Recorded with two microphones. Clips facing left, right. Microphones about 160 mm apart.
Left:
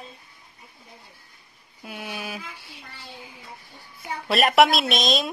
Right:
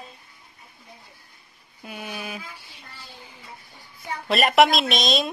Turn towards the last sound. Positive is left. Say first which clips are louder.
# even
turn(degrees=0)  # may be behind; listen again after turning